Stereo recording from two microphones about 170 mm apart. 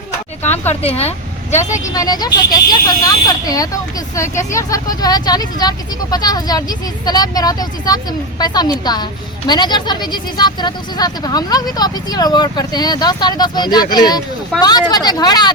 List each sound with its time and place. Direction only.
0.7 s a woman's voice: 35° left (ahead or behind)
1.8 s speech: 20° left (ahead or behind)